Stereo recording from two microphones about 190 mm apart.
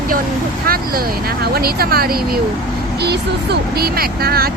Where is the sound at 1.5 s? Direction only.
55° right (ahead or behind).